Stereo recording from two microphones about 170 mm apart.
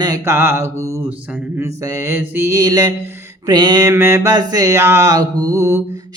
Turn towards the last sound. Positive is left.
turn(degrees=-15)  # may be behind; listen again after turning